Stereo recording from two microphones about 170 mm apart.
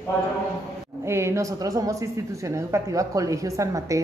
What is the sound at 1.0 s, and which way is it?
A woman's voice, 15° right (ahead or behind).